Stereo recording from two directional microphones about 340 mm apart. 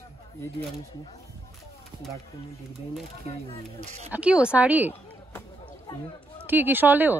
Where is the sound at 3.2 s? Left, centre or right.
Centre.